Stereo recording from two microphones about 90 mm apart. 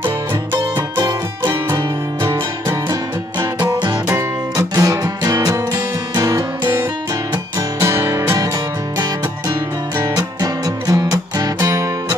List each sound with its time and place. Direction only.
0.0 s music: 30° right (ahead or behind)
0.9 s music: 50° right (ahead or behind)
2.6 s music: 40° right (ahead or behind)
3.6 s music: 55° right (ahead or behind)
4.6 s music: 40° right (ahead or behind)
7.5 s music: 30° right (ahead or behind)
8.9 s music: 50° right (ahead or behind)